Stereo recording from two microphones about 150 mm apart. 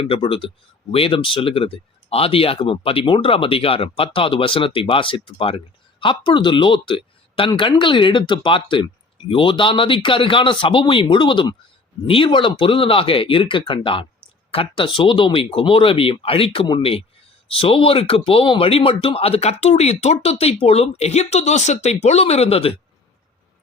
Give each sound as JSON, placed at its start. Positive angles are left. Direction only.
{"t": 0.0, "sound": "speech", "side_deg": 35}